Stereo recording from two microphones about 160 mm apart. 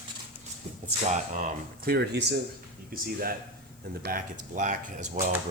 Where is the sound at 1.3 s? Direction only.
50° right (ahead or behind).